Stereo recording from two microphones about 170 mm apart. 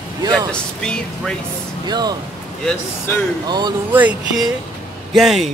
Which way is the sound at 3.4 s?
25° right (ahead or behind).